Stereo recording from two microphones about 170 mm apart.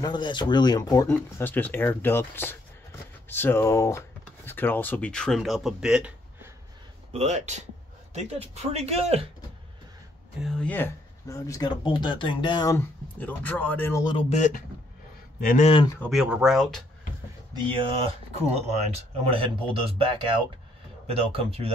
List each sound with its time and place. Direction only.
0.0 s speech: 25° left (ahead or behind); by 6.5 s 5° right (ahead or behind)
7.1 s speech: 40° right (ahead or behind)
10.4 s speech: 5° left (ahead or behind); by 12.7 s 25° left (ahead or behind)
12.7 s speech: 10° left (ahead or behind)
14.3 s speech: 45° left (ahead or behind)
16.1 s speech: 5° right (ahead or behind)
17.6 s speech: 30° right (ahead or behind)